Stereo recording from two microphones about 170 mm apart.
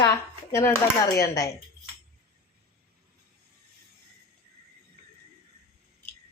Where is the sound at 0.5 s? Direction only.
15° left (ahead or behind).